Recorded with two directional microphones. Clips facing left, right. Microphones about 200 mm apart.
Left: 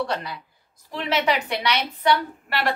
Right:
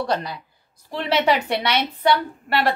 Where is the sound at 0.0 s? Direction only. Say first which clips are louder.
Right 3 dB; 40° right (ahead or behind).